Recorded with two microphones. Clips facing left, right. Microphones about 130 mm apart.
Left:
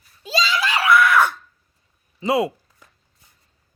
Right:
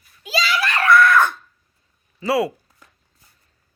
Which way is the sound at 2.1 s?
20° left (ahead or behind).